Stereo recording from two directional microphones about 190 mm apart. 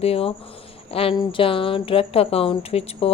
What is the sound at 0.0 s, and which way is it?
Speech, 30° left (ahead or behind).